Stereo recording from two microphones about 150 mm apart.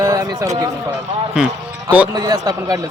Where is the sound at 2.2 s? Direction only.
25° right (ahead or behind).